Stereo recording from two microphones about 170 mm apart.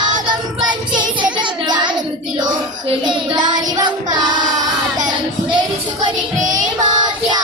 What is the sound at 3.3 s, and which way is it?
Child singing, 25° right (ahead or behind).